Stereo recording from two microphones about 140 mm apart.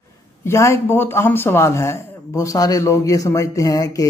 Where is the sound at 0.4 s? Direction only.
20° left (ahead or behind).